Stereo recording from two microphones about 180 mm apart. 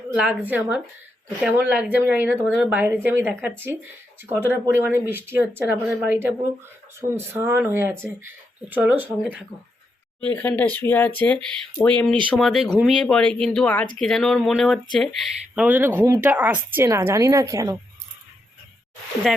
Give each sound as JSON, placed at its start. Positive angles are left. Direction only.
{"t": 0.1, "sound": "speech", "side_deg": -10}
{"t": 10.2, "sound": "speech", "side_deg": 10}